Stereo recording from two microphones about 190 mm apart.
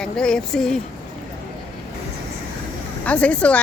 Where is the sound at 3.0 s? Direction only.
5° left (ahead or behind).